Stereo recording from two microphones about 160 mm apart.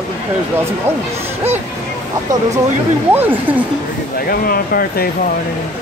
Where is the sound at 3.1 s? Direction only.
10° right (ahead or behind).